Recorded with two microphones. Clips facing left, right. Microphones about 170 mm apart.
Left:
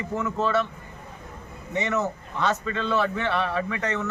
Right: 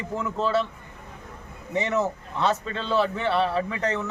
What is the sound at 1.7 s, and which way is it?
Speech, 30° right (ahead or behind).